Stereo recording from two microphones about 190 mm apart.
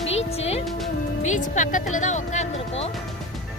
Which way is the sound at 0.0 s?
35° left (ahead or behind).